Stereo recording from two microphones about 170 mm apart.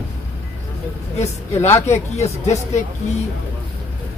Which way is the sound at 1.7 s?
40° left (ahead or behind).